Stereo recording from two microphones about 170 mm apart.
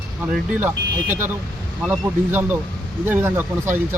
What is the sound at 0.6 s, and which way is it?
Speech, 10° right (ahead or behind).